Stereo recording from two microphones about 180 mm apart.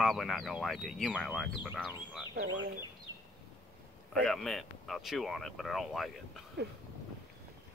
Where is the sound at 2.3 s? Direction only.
75° right (ahead or behind).